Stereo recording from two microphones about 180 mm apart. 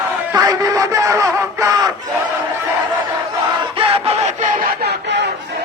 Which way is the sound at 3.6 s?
30° right (ahead or behind).